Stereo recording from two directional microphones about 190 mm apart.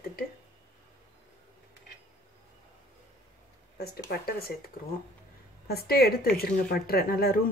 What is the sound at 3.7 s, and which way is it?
Speech, 55° left (ahead or behind).